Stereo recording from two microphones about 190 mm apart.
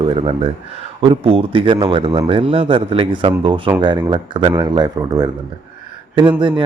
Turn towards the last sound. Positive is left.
turn(degrees=-25)  # may be behind; listen again after turning